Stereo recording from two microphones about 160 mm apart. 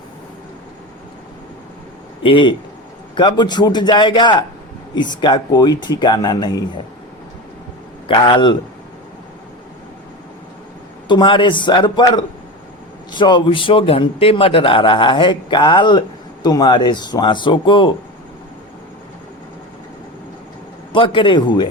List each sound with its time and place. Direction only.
2.2 s a man's voice: 30° left (ahead or behind)
8.0 s a man's voice: 30° left (ahead or behind)
11.1 s speech: 30° left (ahead or behind)
20.9 s a man's voice: 30° left (ahead or behind)